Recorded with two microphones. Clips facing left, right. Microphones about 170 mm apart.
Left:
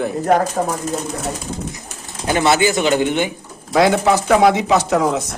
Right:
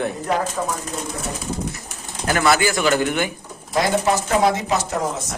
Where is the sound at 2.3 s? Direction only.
25° left (ahead or behind).